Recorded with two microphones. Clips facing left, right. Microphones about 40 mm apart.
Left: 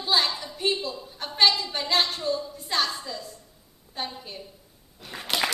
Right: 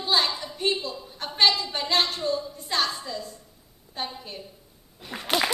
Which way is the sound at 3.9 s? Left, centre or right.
Centre.